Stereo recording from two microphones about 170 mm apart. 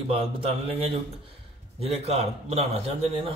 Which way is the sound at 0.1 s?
35° right (ahead or behind).